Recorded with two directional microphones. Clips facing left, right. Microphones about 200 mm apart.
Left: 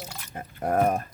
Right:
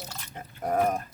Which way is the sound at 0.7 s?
55° left (ahead or behind).